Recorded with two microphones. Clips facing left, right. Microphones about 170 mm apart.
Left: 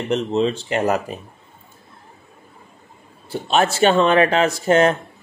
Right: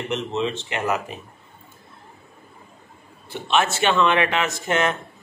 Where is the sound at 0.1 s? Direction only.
35° left (ahead or behind).